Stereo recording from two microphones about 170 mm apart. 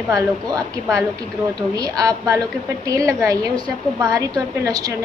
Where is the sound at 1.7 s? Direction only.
20° right (ahead or behind).